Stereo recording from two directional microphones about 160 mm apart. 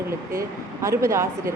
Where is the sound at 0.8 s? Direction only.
20° right (ahead or behind).